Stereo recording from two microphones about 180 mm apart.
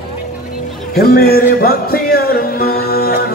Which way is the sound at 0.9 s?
60° left (ahead or behind).